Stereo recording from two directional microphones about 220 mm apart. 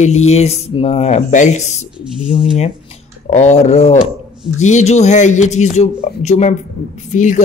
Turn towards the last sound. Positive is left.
turn(degrees=35)  # may be behind; listen again after turning